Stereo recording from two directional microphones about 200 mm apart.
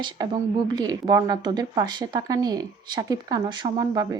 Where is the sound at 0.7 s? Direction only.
20° right (ahead or behind).